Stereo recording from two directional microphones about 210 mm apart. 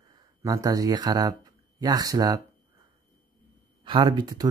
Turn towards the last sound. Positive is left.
turn(degrees=-20)  # may be behind; listen again after turning